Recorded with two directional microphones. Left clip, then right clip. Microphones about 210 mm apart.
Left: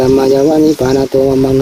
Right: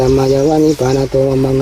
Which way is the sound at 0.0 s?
45° left (ahead or behind).